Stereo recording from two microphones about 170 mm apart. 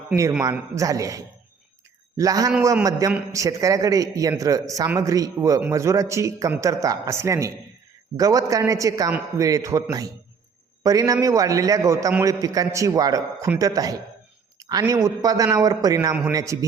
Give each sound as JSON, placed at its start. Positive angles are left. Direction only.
{"t": 0.1, "sound": "a man's voice", "side_deg": -5}
{"t": 0.8, "sound": "a man's voice", "side_deg": -20}
{"t": 10.8, "sound": "a man's voice", "side_deg": -20}